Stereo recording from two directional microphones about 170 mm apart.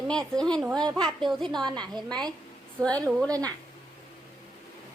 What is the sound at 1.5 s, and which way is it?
Speech, 25° right (ahead or behind).